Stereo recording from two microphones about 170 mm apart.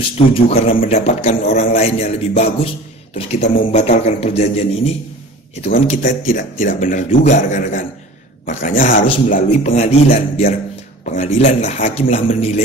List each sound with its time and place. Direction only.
0.3 s a man's voice: 35° left (ahead or behind)
5.7 s a man's voice: 55° left (ahead or behind)
9.5 s a man's voice: 40° left (ahead or behind)